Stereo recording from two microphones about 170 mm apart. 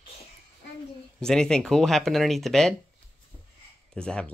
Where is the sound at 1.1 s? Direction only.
5° left (ahead or behind).